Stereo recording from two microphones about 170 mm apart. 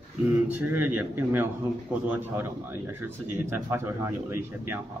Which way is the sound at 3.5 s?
15° right (ahead or behind).